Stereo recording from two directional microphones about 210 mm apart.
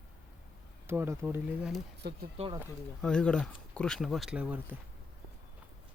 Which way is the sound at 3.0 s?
5° left (ahead or behind).